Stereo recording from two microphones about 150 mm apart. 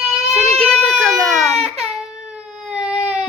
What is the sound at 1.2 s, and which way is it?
Baby cry, centre (ahead or behind).